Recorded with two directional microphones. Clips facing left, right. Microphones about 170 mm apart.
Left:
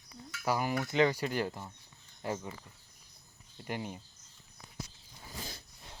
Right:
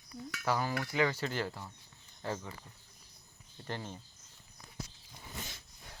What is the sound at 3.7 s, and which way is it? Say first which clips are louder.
Cutlery: left 3 dB; 15° left (ahead or behind).